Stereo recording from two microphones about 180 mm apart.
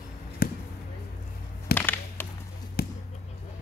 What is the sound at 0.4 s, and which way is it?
Basketball bounce, 60° left (ahead or behind).